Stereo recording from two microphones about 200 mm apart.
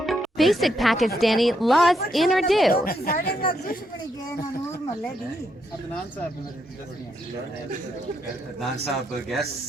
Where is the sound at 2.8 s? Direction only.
45° left (ahead or behind).